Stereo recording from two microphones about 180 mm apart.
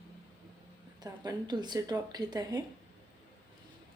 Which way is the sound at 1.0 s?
20° right (ahead or behind).